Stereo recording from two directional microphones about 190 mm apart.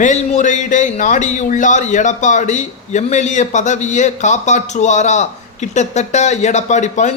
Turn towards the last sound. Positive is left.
turn(degrees=40)  # may be behind; listen again after turning